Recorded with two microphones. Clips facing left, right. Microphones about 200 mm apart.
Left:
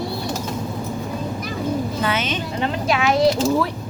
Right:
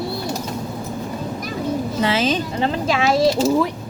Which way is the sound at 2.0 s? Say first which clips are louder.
Right 4 dB; 30° right (ahead or behind).